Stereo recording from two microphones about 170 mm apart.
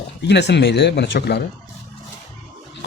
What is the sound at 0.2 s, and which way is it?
Speech, 85° left.